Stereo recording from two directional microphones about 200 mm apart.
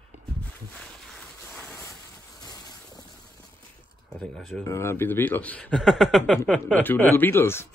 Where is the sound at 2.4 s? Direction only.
20° left (ahead or behind).